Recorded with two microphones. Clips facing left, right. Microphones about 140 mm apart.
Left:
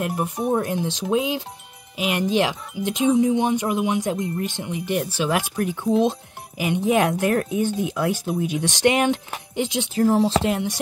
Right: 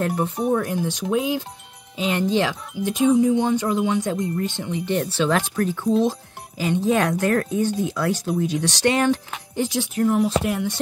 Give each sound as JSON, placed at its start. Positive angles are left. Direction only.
{"t": 0.1, "sound": "speech", "side_deg": 5}
{"t": 0.5, "sound": "speech", "side_deg": 20}
{"t": 10.0, "sound": "speech", "side_deg": 30}